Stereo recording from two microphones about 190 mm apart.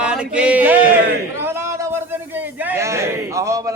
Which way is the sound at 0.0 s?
5° right (ahead or behind).